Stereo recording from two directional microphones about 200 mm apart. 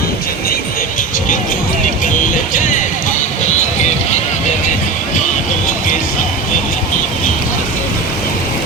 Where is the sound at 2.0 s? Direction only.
40° left (ahead or behind).